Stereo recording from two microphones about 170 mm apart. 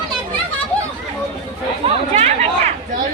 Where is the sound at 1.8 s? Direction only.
40° right (ahead or behind).